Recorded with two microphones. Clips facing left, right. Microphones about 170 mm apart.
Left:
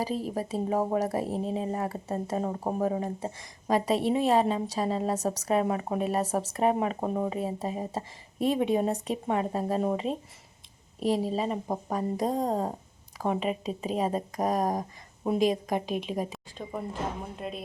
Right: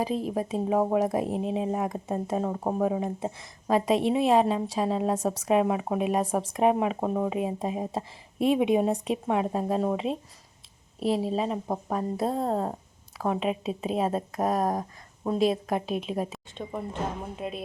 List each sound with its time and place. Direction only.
0.1 s speech: 40° left (ahead or behind)
0.5 s a woman's voice: 5° right (ahead or behind)
7.3 s a woman's voice: 10° right (ahead or behind)
11.3 s speech: 5° left (ahead or behind)
12.5 s speech: 10° left (ahead or behind)
15.2 s a woman's voice: 10° left (ahead or behind)